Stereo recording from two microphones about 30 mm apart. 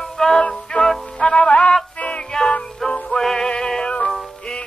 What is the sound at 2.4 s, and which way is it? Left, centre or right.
Music, left.